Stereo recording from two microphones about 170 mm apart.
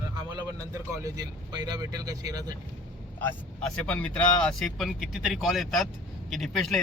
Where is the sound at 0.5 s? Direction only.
20° right (ahead or behind).